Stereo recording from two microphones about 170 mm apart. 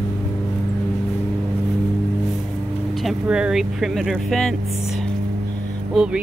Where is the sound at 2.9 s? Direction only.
Centre (ahead or behind).